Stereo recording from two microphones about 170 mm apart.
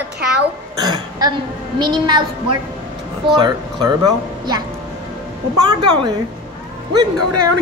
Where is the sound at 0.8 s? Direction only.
25° right (ahead or behind).